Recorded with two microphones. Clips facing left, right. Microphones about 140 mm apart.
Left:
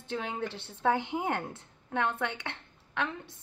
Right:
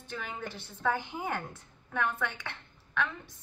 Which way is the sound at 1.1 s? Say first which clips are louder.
Left 4 dB; 25° left (ahead or behind).